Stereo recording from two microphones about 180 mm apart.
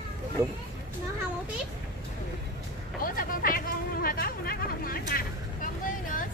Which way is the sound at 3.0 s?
50° left (ahead or behind).